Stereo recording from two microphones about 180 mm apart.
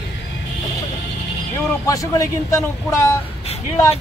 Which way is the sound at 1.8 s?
20° left (ahead or behind).